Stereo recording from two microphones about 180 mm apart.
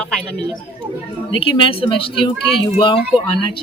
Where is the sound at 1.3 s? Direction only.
30° left (ahead or behind).